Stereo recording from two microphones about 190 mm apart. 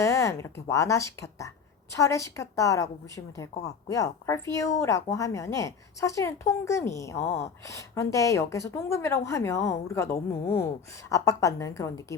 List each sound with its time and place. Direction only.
0.0 s speech: 15° left (ahead or behind)